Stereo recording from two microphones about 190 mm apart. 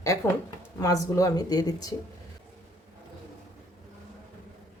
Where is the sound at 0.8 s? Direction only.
20° left (ahead or behind).